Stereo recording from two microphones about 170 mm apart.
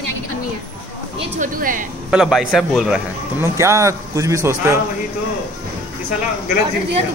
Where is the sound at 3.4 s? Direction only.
15° right (ahead or behind).